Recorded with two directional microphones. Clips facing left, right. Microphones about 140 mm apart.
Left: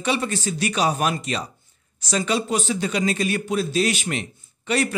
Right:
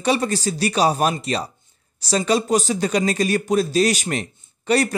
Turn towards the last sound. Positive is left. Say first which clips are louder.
# right 4 dB
turn(degrees=-40)  # may be behind; listen again after turning